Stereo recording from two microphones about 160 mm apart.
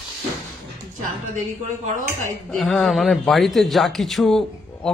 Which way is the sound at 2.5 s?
Centre (ahead or behind).